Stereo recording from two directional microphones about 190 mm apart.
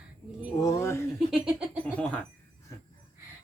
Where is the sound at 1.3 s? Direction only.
5° right (ahead or behind).